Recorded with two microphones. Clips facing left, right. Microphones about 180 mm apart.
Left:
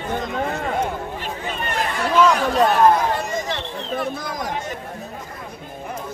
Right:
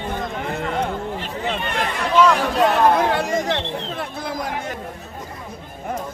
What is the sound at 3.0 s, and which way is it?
Chatter, 75° right (ahead or behind).